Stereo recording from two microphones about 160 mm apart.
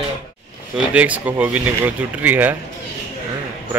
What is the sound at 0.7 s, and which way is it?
Speech, 10° right (ahead or behind).